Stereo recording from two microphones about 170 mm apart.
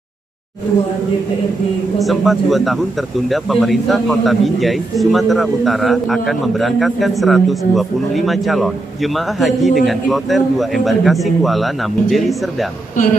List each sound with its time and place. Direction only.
2.0 s a man's voice: centre (ahead or behind)
12.9 s speech: 50° left (ahead or behind)